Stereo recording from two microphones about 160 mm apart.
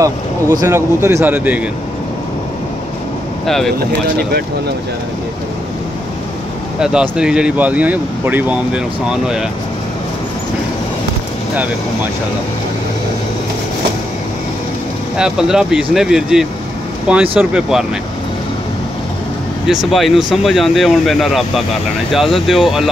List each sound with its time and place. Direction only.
0.0 s speech: 20° right (ahead or behind)
3.4 s speech: centre (ahead or behind)
6.8 s speech: 5° right (ahead or behind)
15.1 s speech: 5° right (ahead or behind)
19.9 s speech: centre (ahead or behind)